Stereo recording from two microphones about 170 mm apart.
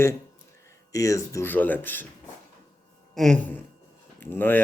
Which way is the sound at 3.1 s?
5° left (ahead or behind).